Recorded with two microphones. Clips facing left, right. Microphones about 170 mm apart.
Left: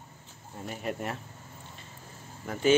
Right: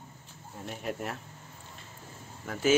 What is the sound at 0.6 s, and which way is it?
Speech, centre (ahead or behind).